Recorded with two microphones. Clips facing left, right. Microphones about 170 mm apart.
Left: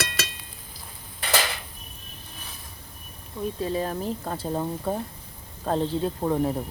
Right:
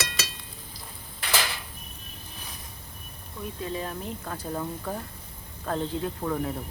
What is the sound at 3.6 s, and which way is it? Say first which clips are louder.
Speech: left 5 dB; 35° left (ahead or behind).